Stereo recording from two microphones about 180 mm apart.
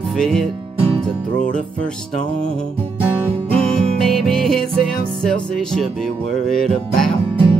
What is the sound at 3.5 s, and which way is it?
Music, 5° left (ahead or behind).